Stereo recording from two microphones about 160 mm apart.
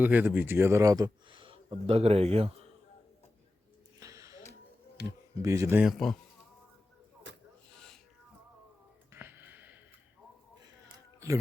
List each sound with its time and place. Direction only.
0.0 s speech: 10° right (ahead or behind); by 2.5 s 40° right (ahead or behind)
4.0 s a sound: 20° right (ahead or behind)
5.0 s speech: 90° right
5.4 s speech: 20° right (ahead or behind)
5.8 s speech: centre (ahead or behind)
9.1 s a sound: 15° right (ahead or behind)